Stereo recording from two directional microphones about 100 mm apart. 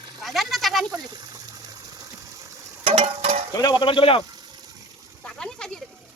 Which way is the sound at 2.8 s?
70° right (ahead or behind).